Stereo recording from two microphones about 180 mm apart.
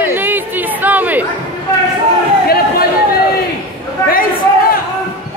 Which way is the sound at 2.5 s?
60° left (ahead or behind).